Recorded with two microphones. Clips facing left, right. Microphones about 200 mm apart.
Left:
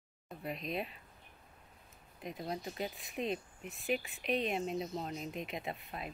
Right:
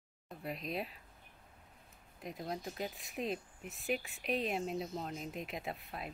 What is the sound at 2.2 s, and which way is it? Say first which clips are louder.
Speech: left 1 dB; centre (ahead or behind).